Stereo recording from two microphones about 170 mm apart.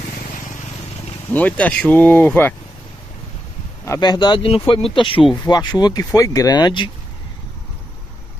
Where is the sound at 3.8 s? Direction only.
20° left (ahead or behind).